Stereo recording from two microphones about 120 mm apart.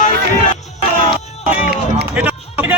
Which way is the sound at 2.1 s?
15° right (ahead or behind).